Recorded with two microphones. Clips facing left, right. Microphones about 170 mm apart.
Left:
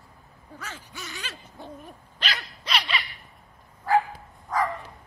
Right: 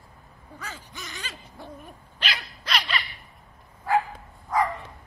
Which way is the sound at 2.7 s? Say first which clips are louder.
Even; 5° left (ahead or behind).